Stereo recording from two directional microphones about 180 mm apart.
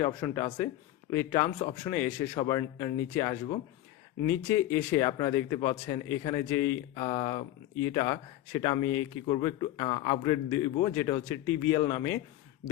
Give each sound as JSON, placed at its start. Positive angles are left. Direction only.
{"t": 0.0, "sound": "speech", "side_deg": 20}
{"t": 1.5, "sound": "a man's voice", "side_deg": 30}
{"t": 1.9, "sound": "speech", "side_deg": 10}
{"t": 2.3, "sound": "speech", "side_deg": 20}
{"t": 6.9, "sound": "speech", "side_deg": 25}
{"t": 9.2, "sound": "speech", "side_deg": 25}